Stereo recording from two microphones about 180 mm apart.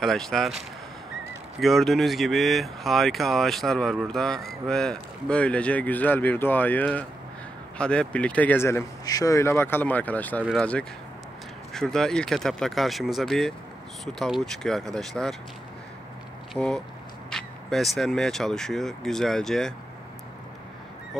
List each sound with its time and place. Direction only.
0.0 s speech: centre (ahead or behind)
16.5 s speech: 5° left (ahead or behind)